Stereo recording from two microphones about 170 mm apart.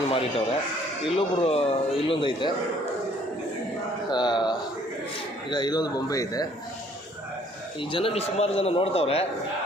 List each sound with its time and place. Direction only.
0.1 s a man's voice: 35° left (ahead or behind)
4.1 s a man's voice: 25° left (ahead or behind)
7.8 s a man's voice: 30° left (ahead or behind)